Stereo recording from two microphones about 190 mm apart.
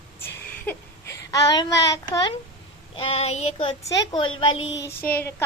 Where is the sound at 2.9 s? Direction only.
30° left (ahead or behind).